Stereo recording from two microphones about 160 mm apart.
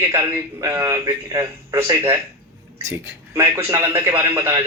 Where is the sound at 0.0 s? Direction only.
15° right (ahead or behind).